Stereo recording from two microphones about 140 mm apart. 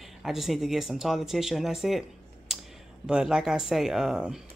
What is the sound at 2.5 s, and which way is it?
Computer keyboard, 5° right (ahead or behind).